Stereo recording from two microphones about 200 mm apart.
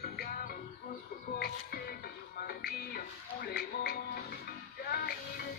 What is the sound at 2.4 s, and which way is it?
Music, 50° left (ahead or behind).